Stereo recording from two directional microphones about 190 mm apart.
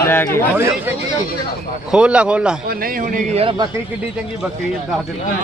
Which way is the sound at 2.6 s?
50° right (ahead or behind).